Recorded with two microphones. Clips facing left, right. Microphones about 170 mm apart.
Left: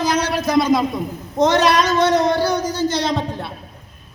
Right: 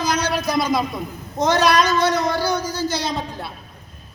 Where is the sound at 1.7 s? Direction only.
20° left (ahead or behind).